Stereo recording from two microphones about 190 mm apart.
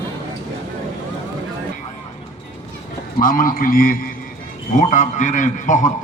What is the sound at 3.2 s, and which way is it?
A man's voice, 45° left (ahead or behind).